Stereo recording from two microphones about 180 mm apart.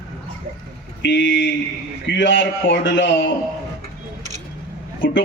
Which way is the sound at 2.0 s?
75° left (ahead or behind).